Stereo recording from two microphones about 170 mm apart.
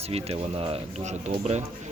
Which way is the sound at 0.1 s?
35° right (ahead or behind).